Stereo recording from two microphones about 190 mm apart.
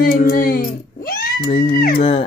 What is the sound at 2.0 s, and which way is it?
Speech, 30° left (ahead or behind).